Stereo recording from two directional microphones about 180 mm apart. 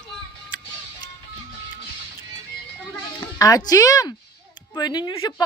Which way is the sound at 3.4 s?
20° left (ahead or behind).